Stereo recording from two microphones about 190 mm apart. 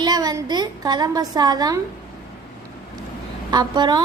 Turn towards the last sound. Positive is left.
turn(degrees=-25)  # may be behind; listen again after turning